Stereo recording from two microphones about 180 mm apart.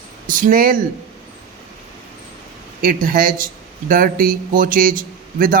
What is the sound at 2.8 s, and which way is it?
Speech, 50° right (ahead or behind).